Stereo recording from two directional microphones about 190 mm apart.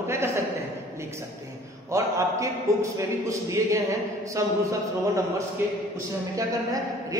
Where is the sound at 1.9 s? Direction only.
15° right (ahead or behind).